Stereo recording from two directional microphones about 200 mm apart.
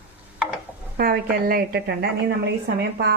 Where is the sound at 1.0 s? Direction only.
50° right (ahead or behind).